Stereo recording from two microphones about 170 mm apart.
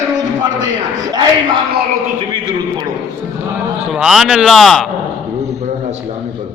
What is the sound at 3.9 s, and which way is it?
Speech, centre (ahead or behind).